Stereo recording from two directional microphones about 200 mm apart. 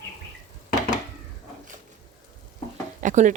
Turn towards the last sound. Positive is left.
turn(degrees=-40)  # may be behind; listen again after turning